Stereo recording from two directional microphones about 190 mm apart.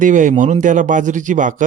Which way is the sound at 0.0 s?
40° right (ahead or behind).